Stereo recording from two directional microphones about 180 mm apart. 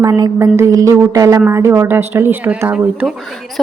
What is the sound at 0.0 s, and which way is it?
A woman's voice, 15° right (ahead or behind).